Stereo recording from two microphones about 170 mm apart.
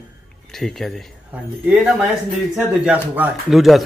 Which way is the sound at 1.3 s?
10° right (ahead or behind).